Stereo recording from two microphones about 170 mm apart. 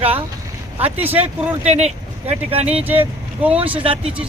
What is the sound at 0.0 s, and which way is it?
Speech, 35° right (ahead or behind).